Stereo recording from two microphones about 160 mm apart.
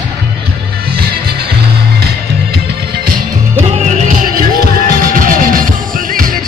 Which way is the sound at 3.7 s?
50° right (ahead or behind).